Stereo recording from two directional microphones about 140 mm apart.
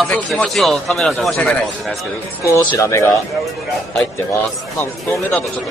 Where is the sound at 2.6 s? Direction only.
20° left (ahead or behind).